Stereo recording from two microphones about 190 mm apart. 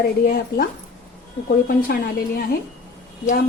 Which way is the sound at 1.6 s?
50° left (ahead or behind).